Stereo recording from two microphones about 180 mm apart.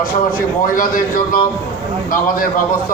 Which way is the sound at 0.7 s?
50° left (ahead or behind).